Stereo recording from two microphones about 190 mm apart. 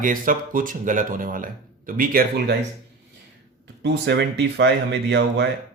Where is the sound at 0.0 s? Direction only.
45° right (ahead or behind).